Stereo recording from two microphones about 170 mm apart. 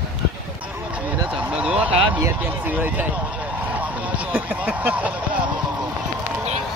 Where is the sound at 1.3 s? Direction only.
5° right (ahead or behind).